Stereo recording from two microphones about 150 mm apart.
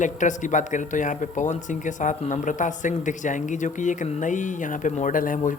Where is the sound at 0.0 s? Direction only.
55° left (ahead or behind).